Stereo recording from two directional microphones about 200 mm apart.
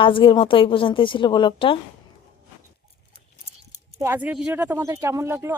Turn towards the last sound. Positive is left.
turn(degrees=-15)  # may be behind; listen again after turning